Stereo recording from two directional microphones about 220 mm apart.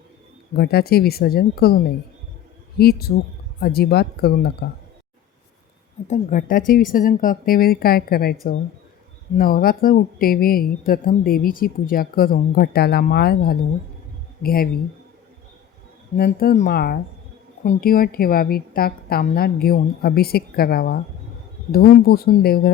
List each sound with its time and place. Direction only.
0.5 s a woman's voice: 45° left (ahead or behind)
6.1 s speech: 40° left (ahead or behind)
9.4 s a woman's voice: 40° left (ahead or behind)
16.1 s a woman's voice: 45° left (ahead or behind)